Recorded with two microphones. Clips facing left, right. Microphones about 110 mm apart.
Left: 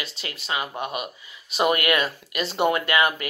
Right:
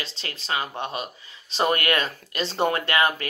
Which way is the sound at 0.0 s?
30° right (ahead or behind).